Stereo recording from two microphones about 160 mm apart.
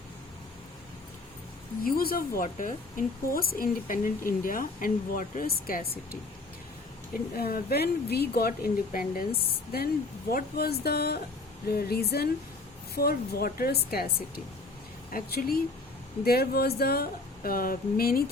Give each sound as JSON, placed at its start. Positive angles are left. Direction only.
{"t": 1.8, "sound": "speech", "side_deg": 65}
{"t": 3.3, "sound": "speech", "side_deg": 65}
{"t": 7.3, "sound": "speech", "side_deg": 70}